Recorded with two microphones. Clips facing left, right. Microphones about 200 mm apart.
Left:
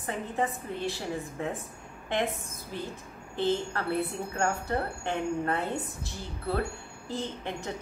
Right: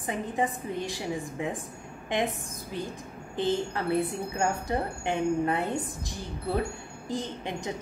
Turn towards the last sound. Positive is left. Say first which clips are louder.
# right 2 dB
turn(degrees=-15)  # may be behind; listen again after turning